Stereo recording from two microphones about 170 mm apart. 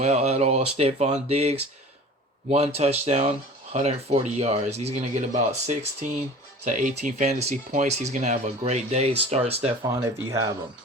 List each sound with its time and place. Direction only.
0.0 s speech: 40° right (ahead or behind)
9.9 s speech: 20° right (ahead or behind)